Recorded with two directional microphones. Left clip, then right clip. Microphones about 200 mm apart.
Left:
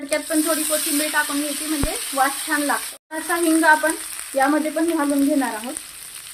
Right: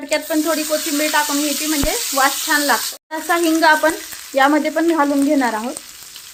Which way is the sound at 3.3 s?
45° right (ahead or behind).